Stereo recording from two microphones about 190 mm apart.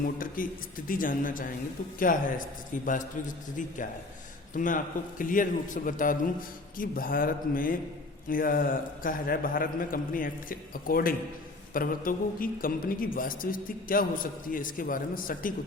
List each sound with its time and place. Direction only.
0.0 s speech: 45° left (ahead or behind)
4.5 s speech: 45° left (ahead or behind)